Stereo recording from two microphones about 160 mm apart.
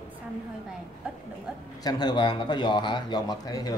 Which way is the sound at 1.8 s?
25° left (ahead or behind).